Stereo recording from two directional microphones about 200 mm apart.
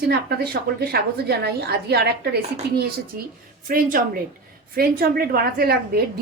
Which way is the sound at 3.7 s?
45° right (ahead or behind).